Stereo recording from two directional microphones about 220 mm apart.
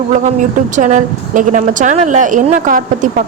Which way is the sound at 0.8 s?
35° right (ahead or behind).